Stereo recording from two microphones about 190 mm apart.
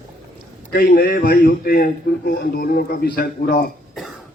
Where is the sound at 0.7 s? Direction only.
55° left (ahead or behind).